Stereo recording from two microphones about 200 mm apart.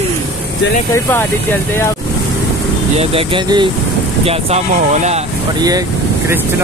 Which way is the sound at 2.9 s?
30° right (ahead or behind).